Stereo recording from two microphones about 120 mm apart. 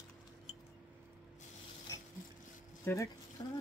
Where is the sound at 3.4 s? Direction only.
55° left (ahead or behind).